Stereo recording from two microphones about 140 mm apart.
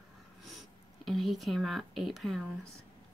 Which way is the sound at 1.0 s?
Centre (ahead or behind).